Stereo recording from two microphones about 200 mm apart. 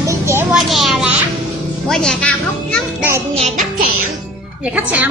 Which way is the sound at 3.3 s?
40° right (ahead or behind).